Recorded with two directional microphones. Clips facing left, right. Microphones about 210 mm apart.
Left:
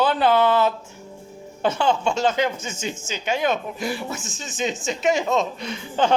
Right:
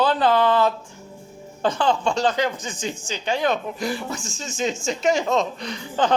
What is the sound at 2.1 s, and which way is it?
Speech, 25° left (ahead or behind).